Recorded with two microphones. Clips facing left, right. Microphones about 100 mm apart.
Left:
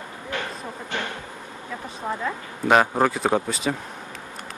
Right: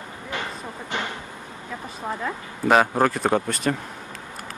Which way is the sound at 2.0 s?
Centre (ahead or behind).